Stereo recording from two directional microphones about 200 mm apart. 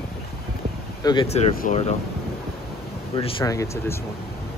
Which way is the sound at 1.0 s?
25° left (ahead or behind).